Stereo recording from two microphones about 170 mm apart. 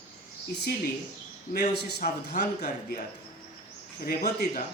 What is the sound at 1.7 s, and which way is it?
Speech, 75° left (ahead or behind).